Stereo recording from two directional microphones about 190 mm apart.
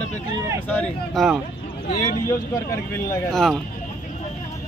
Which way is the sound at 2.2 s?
15° left (ahead or behind).